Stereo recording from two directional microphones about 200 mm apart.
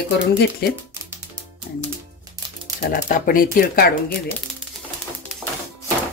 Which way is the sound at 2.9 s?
45° left (ahead or behind).